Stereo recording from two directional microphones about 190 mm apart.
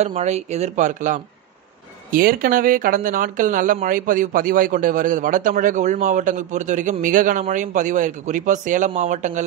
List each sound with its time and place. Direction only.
0.0 s speech: 35° right (ahead or behind)